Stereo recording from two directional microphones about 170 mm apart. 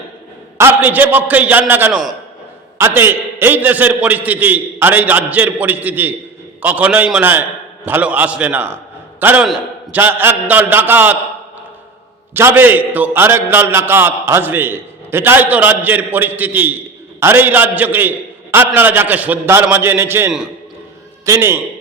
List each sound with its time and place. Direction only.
0.6 s a man's voice: 10° right (ahead or behind)
12.3 s a man's voice: 10° right (ahead or behind)